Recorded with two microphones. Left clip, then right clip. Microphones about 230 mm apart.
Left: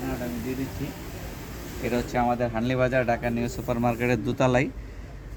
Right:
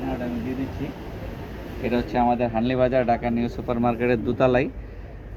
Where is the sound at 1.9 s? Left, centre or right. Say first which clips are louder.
Right 3 dB; left.